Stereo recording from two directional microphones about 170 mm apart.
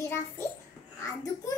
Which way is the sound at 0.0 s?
15° left (ahead or behind).